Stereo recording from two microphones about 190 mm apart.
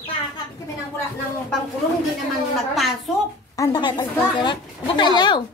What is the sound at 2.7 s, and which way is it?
Speech, centre (ahead or behind).